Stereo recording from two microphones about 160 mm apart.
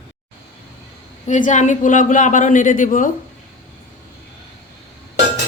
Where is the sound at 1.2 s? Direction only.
50° left (ahead or behind).